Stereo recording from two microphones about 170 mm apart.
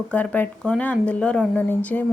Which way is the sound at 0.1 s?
10° left (ahead or behind).